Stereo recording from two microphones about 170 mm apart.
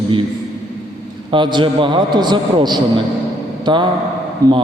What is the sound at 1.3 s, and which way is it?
A man's voice, 30° right (ahead or behind).